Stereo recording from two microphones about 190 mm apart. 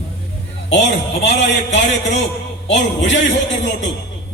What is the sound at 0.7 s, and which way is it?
A man's voice, 70° left (ahead or behind).